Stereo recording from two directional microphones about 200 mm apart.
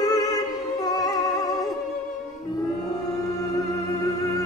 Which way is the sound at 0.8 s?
20° left (ahead or behind).